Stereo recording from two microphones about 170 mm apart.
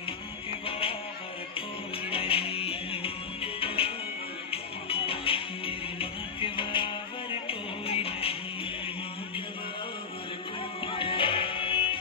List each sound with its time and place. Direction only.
0.5 s music: 35° left (ahead or behind)
2.0 s music: 30° left (ahead or behind)
10.9 s music: 30° left (ahead or behind)